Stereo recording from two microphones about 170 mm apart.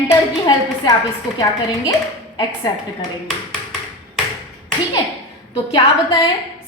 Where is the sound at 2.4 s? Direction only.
25° left (ahead or behind).